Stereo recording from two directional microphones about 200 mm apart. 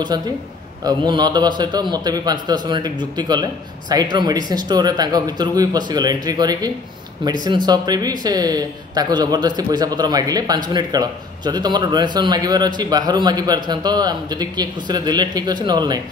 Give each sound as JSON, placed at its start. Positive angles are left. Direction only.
{"t": 0.1, "sound": "speech", "side_deg": -20}